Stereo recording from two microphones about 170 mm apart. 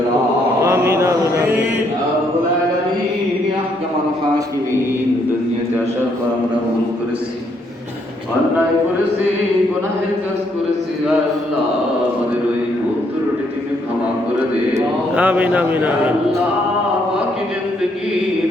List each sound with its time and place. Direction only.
0.6 s mantra: 15° right (ahead or behind)
14.7 s speech: 10° right (ahead or behind)